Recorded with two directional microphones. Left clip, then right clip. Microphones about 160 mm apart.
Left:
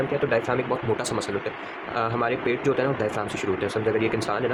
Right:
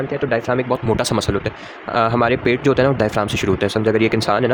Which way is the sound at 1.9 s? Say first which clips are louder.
Right 9 dB; 85° right.